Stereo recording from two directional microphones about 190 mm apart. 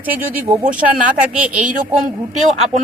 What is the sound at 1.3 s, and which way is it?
Speech, 5° right (ahead or behind).